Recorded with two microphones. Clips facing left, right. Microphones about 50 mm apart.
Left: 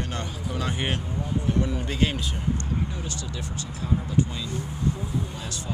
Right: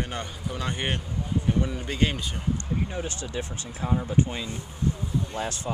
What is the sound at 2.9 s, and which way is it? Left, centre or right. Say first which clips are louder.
Speech: right 3 dB; right.